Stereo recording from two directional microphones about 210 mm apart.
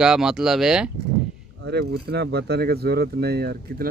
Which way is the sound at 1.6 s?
50° right (ahead or behind).